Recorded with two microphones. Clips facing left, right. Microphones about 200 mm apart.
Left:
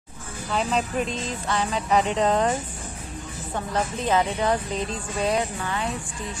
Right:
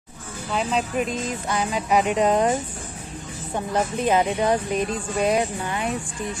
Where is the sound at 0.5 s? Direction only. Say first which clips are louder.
Right 1 dB; centre (ahead or behind).